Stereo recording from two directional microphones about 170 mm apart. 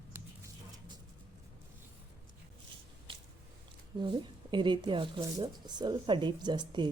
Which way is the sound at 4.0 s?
30° right (ahead or behind).